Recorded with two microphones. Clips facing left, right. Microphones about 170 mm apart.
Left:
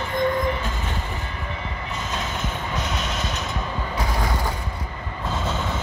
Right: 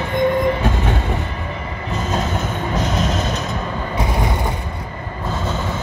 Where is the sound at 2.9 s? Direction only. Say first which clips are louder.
Right 8 dB; 40° right (ahead or behind).